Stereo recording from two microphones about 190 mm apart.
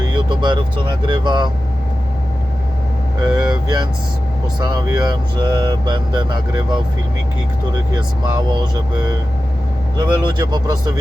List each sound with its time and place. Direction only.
0.1 s vehicle: 25° right (ahead or behind)
1.0 s speech: 25° right (ahead or behind)
3.3 s speech: 20° right (ahead or behind)
10.0 s speech: 25° right (ahead or behind)